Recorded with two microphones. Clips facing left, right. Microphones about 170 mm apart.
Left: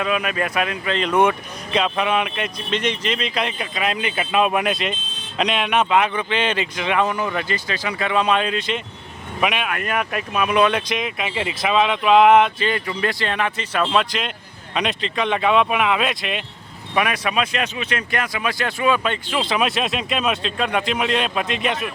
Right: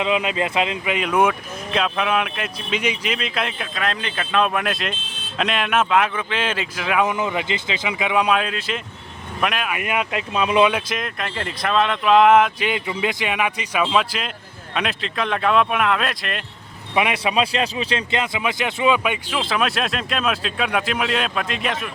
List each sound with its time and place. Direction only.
0.0 s speech: 20° right (ahead or behind)
0.9 s speech: 5° right (ahead or behind)
7.1 s speech: 20° right (ahead or behind); by 9.8 s centre (ahead or behind)
9.8 s speech: 15° right (ahead or behind)
10.7 s speech: 5° right (ahead or behind)
12.5 s speech: 15° right (ahead or behind); by 16.5 s centre (ahead or behind)
16.9 s speech: 20° right (ahead or behind); by 21.8 s centre (ahead or behind)